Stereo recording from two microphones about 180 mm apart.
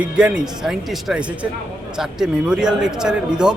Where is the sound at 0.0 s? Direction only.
5° right (ahead or behind).